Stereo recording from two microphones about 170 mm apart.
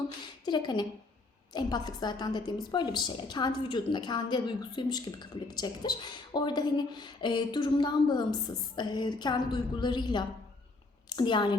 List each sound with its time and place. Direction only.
0.4 s a woman's voice: 25° left (ahead or behind)